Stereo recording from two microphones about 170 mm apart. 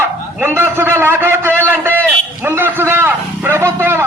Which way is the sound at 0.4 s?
15° right (ahead or behind).